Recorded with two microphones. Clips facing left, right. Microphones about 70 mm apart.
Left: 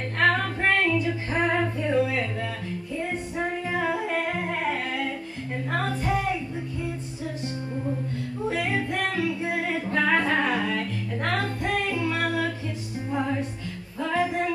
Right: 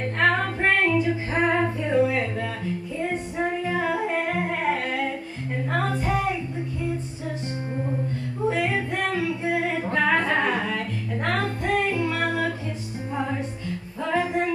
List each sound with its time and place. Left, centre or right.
0.2 s music: centre
0.8 s female singing: right
1.8 s a sound: centre
3.8 s music: centre
4.3 s singing: centre
8.5 s music: centre
9.9 s singing: centre
11.3 s music: centre
11.9 s music: right
14.1 s music: centre